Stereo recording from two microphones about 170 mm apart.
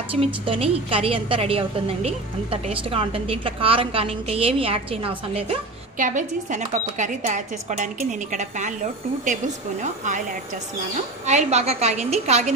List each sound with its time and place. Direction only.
0.1 s a woman's voice: 35° right (ahead or behind)
5.9 s speech: 50° right (ahead or behind)
11.2 s a woman's voice: 40° right (ahead or behind)